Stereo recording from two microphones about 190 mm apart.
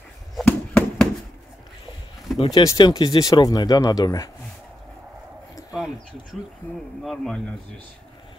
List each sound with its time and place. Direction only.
0.4 s a sound: 5° left (ahead or behind)
2.3 s speech: 30° left (ahead or behind)
2.6 s speech: 20° left (ahead or behind)
7.0 s speech: centre (ahead or behind)